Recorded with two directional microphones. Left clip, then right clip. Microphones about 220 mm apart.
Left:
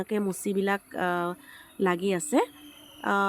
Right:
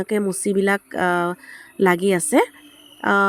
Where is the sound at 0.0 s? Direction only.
25° right (ahead or behind).